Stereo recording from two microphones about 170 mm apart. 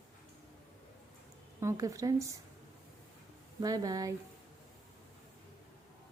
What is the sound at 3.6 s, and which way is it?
Speech, 20° right (ahead or behind).